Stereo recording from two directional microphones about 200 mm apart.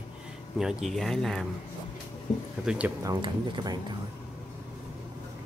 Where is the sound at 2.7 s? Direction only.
5° right (ahead or behind).